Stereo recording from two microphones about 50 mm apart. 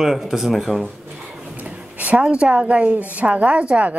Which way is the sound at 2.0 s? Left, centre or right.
Right.